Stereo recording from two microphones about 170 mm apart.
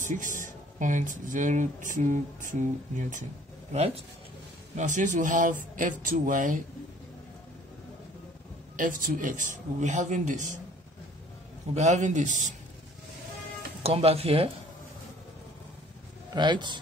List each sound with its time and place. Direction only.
0.0 s speech: 50° right (ahead or behind)
8.7 s speech: 50° right (ahead or behind)
11.7 s speech: 45° right (ahead or behind)
13.8 s speech: 35° right (ahead or behind)
16.3 s a man's voice: 25° right (ahead or behind)